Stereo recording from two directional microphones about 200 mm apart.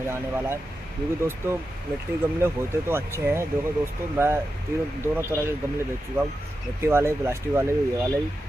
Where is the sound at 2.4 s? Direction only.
10° right (ahead or behind).